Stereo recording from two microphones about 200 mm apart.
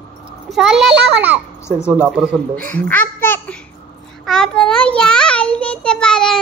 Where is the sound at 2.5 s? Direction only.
10° left (ahead or behind).